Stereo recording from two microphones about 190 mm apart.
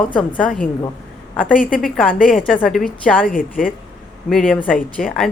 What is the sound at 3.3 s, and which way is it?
Speech, 45° left (ahead or behind).